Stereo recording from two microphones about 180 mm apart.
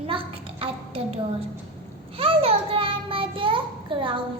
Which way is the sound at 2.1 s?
30° right (ahead or behind).